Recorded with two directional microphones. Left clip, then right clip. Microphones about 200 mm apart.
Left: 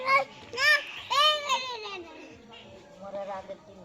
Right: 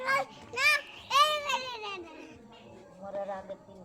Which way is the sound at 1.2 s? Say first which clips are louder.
Left 5 dB; 20° right (ahead or behind).